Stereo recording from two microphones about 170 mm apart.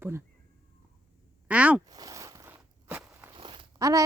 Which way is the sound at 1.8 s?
20° right (ahead or behind).